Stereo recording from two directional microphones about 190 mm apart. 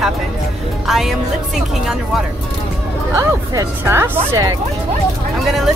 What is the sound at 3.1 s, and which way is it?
Speech, 15° right (ahead or behind).